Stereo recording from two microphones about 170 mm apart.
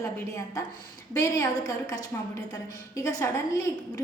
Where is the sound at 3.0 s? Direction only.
20° left (ahead or behind).